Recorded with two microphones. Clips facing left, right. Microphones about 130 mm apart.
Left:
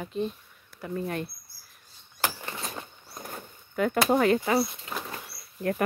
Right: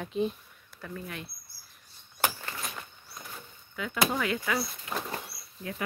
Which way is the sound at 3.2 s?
50° left (ahead or behind).